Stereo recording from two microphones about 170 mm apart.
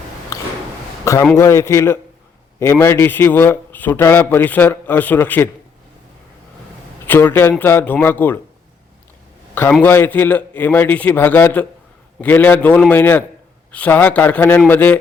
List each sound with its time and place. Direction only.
0.3 s a sound: 20° left (ahead or behind)
1.0 s a man's voice: 15° left (ahead or behind)
7.1 s a man's voice: 10° left (ahead or behind)
9.8 s a man's voice: 10° left (ahead or behind)